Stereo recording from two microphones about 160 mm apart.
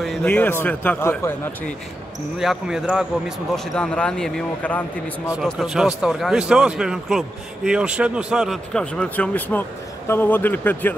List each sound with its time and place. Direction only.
0.0 s a man's voice: 5° left (ahead or behind)
2.3 s a man's voice: centre (ahead or behind)
5.4 s a man's voice: centre (ahead or behind)